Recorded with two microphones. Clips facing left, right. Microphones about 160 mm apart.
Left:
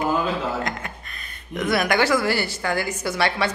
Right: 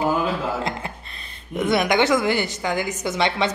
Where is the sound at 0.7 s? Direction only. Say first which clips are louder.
Right 2 dB; 30° right (ahead or behind).